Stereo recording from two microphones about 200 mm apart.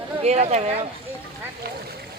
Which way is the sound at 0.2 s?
35° right (ahead or behind).